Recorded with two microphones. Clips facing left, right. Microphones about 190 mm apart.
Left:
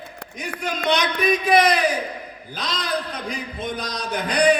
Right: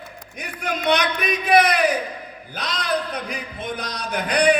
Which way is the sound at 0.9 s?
60° right (ahead or behind).